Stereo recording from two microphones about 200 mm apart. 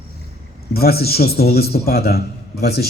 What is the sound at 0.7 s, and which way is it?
A man's voice, 50° left (ahead or behind).